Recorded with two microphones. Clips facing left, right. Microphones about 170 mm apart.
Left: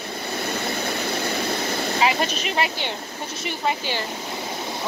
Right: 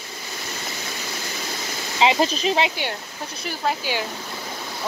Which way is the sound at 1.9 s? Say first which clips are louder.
Right 4 dB; 25° right (ahead or behind).